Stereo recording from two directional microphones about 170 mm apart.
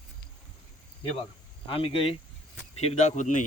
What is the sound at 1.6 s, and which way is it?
A man's voice, 30° left (ahead or behind).